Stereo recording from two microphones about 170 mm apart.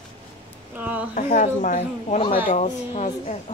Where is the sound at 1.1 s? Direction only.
55° left (ahead or behind).